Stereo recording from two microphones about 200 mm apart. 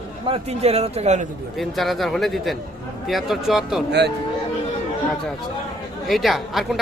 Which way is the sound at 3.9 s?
60° right (ahead or behind).